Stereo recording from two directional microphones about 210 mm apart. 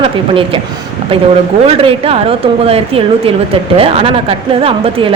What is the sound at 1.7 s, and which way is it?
A woman's voice, 25° right (ahead or behind).